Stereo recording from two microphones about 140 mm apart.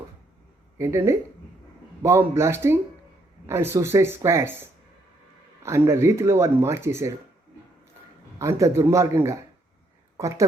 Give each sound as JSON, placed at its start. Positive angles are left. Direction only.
{"t": 0.8, "sound": "speech", "side_deg": -20}
{"t": 8.4, "sound": "speech", "side_deg": -20}